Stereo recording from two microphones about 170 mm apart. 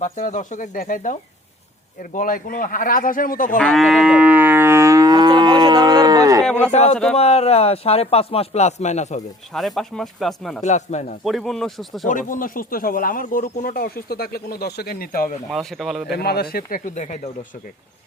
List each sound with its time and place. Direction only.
0.0 s a man's voice: 45° left (ahead or behind)
3.6 s livestock: centre (ahead or behind); by 6.4 s 20° right (ahead or behind)
6.4 s a sound: 5° left (ahead or behind)
6.7 s speech: 40° left (ahead or behind)
6.9 s speech: 5° left (ahead or behind)
7.2 s speech: 40° left (ahead or behind)
9.5 s speech: centre (ahead or behind)
10.6 s a man's voice: 45° left (ahead or behind)
11.2 s speech: centre (ahead or behind)
12.0 s speech: 50° left (ahead or behind)
15.4 s speech: centre (ahead or behind)
16.1 s speech: 65° left (ahead or behind); by 17.2 s 45° left (ahead or behind)